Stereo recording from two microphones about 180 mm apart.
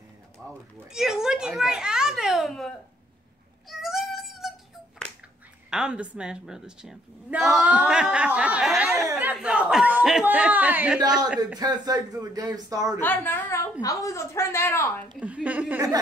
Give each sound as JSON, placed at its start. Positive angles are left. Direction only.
{"t": 0.9, "sound": "a child's voice", "side_deg": 0}
{"t": 3.6, "sound": "a sound", "side_deg": 0}
{"t": 5.7, "sound": "a woman's voice", "side_deg": -5}
{"t": 11.5, "sound": "speech", "side_deg": -20}
{"t": 13.0, "sound": "a woman's voice", "side_deg": 10}
{"t": 15.1, "sound": "speech", "side_deg": -5}